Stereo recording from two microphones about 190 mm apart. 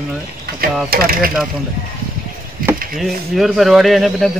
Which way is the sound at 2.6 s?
50° right (ahead or behind).